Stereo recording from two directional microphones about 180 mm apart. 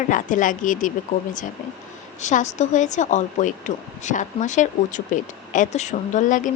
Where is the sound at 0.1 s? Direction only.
45° left (ahead or behind).